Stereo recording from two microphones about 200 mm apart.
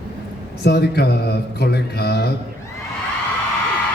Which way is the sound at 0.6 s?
55° left (ahead or behind).